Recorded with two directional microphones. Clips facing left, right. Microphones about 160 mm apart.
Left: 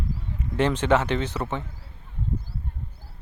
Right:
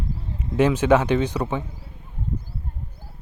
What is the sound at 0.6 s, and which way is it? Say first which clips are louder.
Speech: right 4 dB; 10° right (ahead or behind).